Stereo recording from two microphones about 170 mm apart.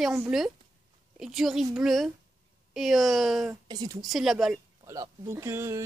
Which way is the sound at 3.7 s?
20° right (ahead or behind).